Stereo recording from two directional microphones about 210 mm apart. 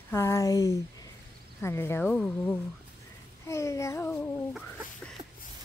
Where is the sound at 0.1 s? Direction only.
10° left (ahead or behind).